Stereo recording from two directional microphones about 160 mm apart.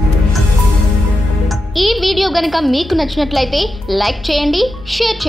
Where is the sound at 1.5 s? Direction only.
Centre (ahead or behind).